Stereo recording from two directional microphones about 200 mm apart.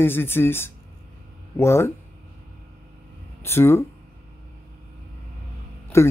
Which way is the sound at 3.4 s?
10° left (ahead or behind).